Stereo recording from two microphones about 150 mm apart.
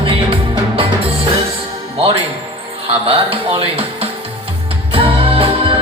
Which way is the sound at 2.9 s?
40° right (ahead or behind).